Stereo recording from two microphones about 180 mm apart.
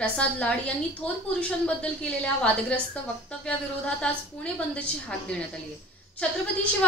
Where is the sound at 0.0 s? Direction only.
5° left (ahead or behind).